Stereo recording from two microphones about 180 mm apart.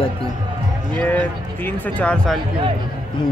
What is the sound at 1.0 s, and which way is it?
Speech, 10° left (ahead or behind).